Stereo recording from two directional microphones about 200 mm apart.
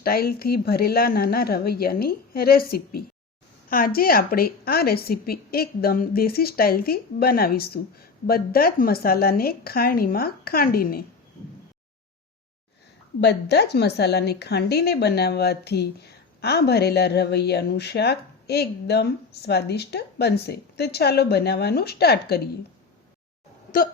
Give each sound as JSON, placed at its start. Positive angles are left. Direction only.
{"t": 0.0, "sound": "a woman's voice", "side_deg": 50}
{"t": 13.2, "sound": "speech", "side_deg": 55}
{"t": 23.7, "sound": "music", "side_deg": 40}